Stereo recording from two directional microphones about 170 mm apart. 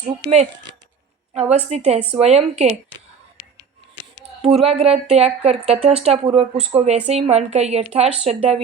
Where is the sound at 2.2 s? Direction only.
40° right (ahead or behind).